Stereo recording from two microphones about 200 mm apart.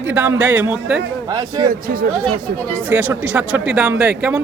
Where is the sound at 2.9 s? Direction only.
10° right (ahead or behind).